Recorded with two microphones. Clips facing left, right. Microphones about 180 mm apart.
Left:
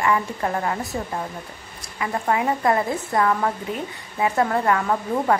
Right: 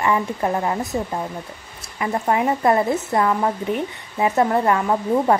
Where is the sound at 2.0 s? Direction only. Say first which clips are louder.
Right 3 dB; 25° right (ahead or behind).